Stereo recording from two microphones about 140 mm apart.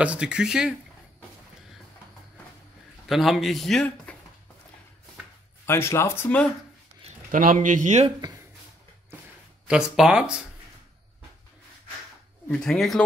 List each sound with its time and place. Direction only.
0.0 s speech: 10° right (ahead or behind)
3.1 s speech: centre (ahead or behind)
5.7 s speech: 20° left (ahead or behind)
7.2 s speech: 75° right (ahead or behind)
9.7 s speech: 5° right (ahead or behind)
12.4 s speech: 5° left (ahead or behind)